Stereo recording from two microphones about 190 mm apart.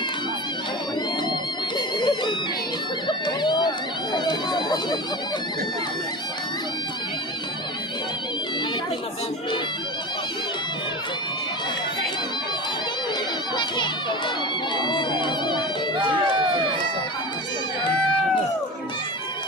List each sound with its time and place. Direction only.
2.0 s music: 25° left (ahead or behind)
3.1 s a sound: 25° left (ahead or behind)
4.1 s chatter: 20° left (ahead or behind)
13.6 s crowd: 25° left (ahead or behind)
14.8 s music: 25° left (ahead or behind)